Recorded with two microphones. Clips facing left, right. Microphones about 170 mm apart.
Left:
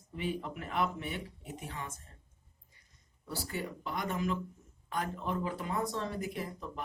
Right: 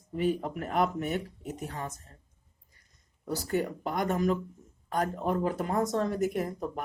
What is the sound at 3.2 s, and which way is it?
Speech, 45° right (ahead or behind).